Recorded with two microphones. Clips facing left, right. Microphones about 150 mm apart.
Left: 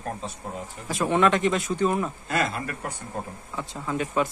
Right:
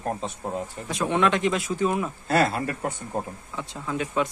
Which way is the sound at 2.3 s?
30° right (ahead or behind).